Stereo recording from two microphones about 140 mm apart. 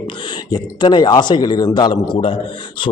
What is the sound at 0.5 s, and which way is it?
A man's voice, 30° left (ahead or behind).